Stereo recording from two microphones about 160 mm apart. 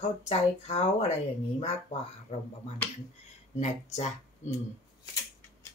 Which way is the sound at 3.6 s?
45° left (ahead or behind).